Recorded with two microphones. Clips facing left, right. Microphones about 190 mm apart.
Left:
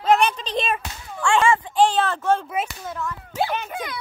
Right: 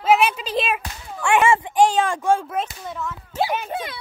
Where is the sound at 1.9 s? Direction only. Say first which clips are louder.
Right 1 dB; 10° right (ahead or behind).